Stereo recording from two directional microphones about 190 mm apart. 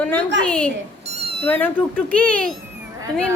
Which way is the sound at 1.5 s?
10° left (ahead or behind).